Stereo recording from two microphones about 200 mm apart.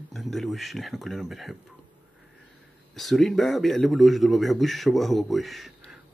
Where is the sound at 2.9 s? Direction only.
Centre (ahead or behind).